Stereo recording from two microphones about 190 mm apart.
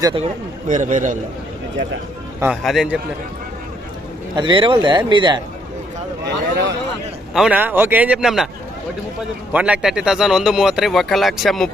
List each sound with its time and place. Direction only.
0.0 s speech: 25° right (ahead or behind)
0.7 s a man's voice: 45° right (ahead or behind)
2.4 s speech: 5° right (ahead or behind)
4.4 s speech: 25° right (ahead or behind)
7.3 s speech: 5° right (ahead or behind)
9.5 s speech: 5° right (ahead or behind)